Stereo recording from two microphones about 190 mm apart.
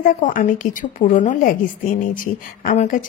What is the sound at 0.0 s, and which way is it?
A woman's voice, 45° left (ahead or behind).